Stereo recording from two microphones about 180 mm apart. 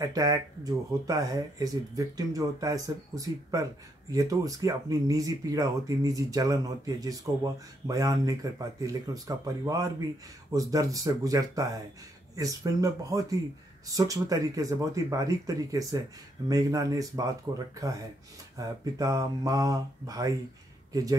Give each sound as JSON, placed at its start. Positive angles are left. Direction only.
{"t": 0.0, "sound": "speech", "side_deg": -20}
{"t": 18.6, "sound": "speech", "side_deg": -20}